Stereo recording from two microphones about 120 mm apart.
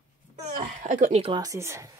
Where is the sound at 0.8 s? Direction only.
85° right.